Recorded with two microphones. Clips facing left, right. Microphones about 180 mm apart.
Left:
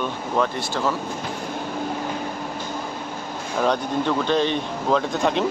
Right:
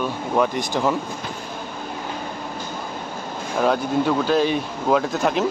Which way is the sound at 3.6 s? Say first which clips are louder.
Right 2 dB; 5° right (ahead or behind).